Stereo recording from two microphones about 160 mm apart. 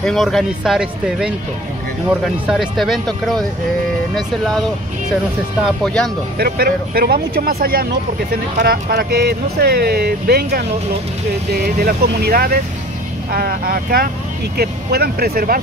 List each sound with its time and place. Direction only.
0.0 s speech: centre (ahead or behind)
6.3 s speech: 70° right (ahead or behind)
11.6 s speech: 80° right